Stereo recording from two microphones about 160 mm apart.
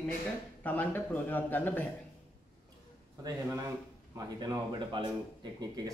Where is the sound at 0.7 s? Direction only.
10° left (ahead or behind).